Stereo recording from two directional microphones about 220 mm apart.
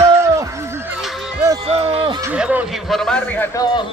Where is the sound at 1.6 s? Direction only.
25° right (ahead or behind).